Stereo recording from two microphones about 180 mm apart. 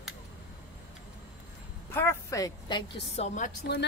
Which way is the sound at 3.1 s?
40° left (ahead or behind).